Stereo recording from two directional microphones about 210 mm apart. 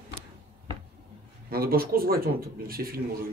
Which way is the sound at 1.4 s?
45° right (ahead or behind).